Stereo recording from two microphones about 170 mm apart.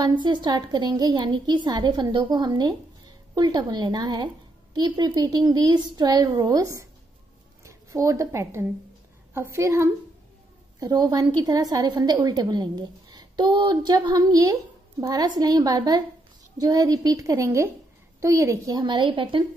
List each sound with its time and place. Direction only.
0.0 s a woman's voice: 25° right (ahead or behind)